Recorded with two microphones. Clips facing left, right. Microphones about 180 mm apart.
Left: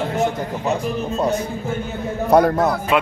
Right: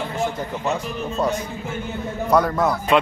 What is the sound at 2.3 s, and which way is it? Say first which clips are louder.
Speech: left 4 dB; 55° left (ahead or behind).